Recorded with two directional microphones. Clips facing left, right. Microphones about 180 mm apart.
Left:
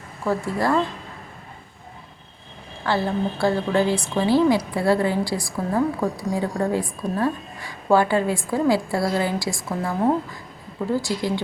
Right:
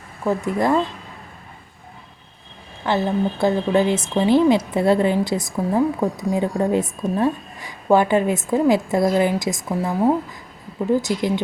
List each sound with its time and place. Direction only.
0.3 s a woman's voice: 20° right (ahead or behind)
2.8 s a woman's voice: 20° right (ahead or behind)
10.9 s a woman's voice: 20° right (ahead or behind)